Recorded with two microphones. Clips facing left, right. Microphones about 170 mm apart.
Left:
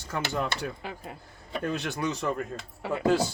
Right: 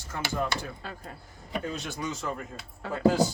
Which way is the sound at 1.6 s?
65° left (ahead or behind).